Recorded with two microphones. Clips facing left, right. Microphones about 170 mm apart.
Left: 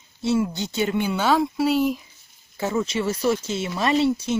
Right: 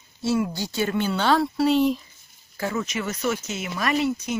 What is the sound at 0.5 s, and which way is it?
Speech, 20° left (ahead or behind).